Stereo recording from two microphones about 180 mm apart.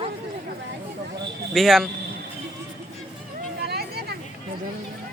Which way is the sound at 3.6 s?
60° right (ahead or behind).